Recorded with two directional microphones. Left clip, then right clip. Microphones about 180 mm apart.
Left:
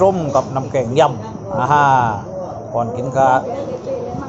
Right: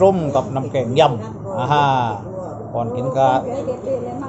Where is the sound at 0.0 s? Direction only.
10° left (ahead or behind).